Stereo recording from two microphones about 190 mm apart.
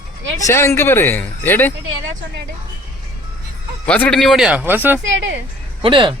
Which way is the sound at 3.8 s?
5° left (ahead or behind).